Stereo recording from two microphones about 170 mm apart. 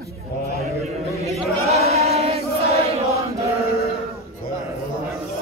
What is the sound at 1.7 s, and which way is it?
Chant, 40° right (ahead or behind).